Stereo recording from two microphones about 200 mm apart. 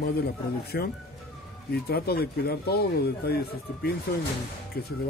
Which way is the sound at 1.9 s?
50° left (ahead or behind).